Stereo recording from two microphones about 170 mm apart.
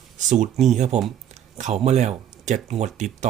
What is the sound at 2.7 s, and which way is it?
Speech, 45° right (ahead or behind).